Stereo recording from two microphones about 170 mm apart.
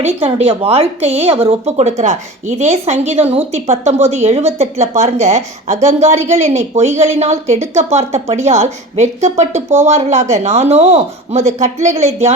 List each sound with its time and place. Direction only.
0.0 s a woman's voice: 35° right (ahead or behind)